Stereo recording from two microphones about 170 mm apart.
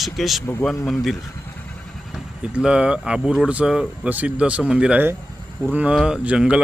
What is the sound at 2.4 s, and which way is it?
Speech, 5° right (ahead or behind).